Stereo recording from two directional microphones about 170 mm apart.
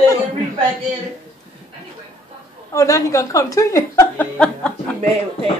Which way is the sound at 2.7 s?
20° left (ahead or behind).